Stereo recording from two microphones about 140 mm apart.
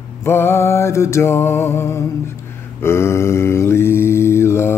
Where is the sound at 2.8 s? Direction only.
20° left (ahead or behind).